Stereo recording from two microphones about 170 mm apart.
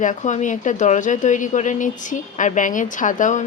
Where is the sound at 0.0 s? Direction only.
45° left (ahead or behind).